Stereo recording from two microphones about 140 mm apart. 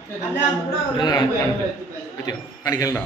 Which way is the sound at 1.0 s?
30° left (ahead or behind).